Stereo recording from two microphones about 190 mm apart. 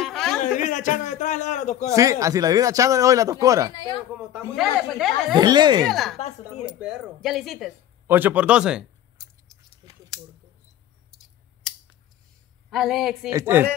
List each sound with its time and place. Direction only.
0.0 s music: centre (ahead or behind)
0.6 s a man's voice: 40° left (ahead or behind)
2.0 s speech: 15° right (ahead or behind)
3.7 s speech: 25° left (ahead or behind)
4.2 s speech: centre (ahead or behind)
5.3 s speech: 20° right (ahead or behind)
5.9 s speech: centre (ahead or behind)
12.6 s speech: centre (ahead or behind)
13.3 s speech: 15° right (ahead or behind)